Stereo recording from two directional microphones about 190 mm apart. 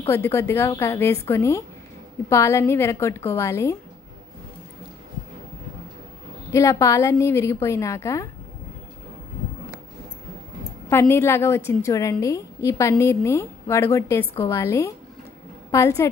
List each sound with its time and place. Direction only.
0.1 s a woman's voice: 10° left (ahead or behind)
6.5 s a woman's voice: 15° left (ahead or behind)
10.9 s a woman's voice: 10° left (ahead or behind)